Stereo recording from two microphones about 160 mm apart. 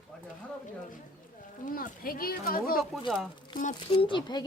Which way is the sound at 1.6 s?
60° left (ahead or behind).